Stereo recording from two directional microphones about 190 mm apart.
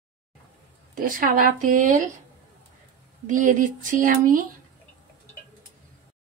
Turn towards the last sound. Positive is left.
turn(degrees=-45)  # may be behind; listen again after turning